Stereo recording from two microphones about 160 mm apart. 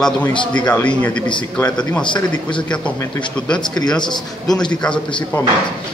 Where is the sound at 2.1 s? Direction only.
30° left (ahead or behind).